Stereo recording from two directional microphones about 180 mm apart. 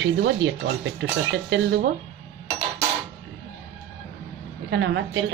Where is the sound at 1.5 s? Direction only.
75° right (ahead or behind).